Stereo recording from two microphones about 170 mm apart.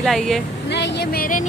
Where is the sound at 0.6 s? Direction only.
90° left; by 1.5 s 55° left (ahead or behind).